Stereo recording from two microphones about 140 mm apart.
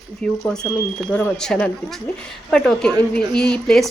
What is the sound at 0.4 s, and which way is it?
Speech, 5° left (ahead or behind).